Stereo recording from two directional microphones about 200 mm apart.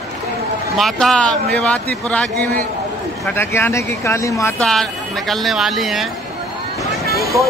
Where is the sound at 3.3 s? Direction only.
10° left (ahead or behind).